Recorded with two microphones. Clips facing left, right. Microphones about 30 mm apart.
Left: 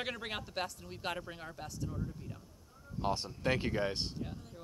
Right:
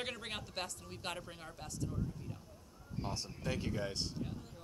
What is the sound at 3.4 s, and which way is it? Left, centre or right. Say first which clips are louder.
Speech: left 6 dB; left.